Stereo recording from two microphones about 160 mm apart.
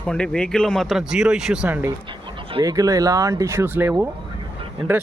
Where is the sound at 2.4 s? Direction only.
35° right (ahead or behind).